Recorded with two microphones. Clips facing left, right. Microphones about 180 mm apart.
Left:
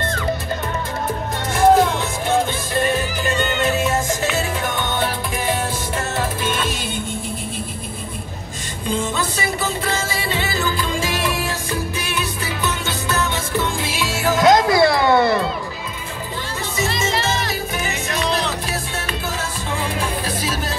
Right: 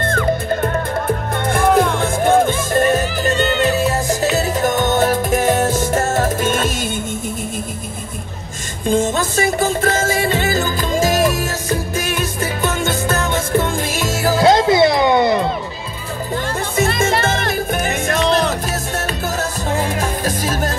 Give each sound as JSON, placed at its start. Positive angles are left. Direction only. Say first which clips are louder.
{"t": 0.0, "sound": "music", "louder": "right 5 dB", "side_deg": -50}
{"t": 8.8, "sound": "music", "louder": "right 6 dB", "side_deg": -45}
{"t": 16.7, "sound": "music", "louder": "right 5 dB", "side_deg": -55}
{"t": 19.7, "sound": "music", "louder": "right 3 dB", "side_deg": -45}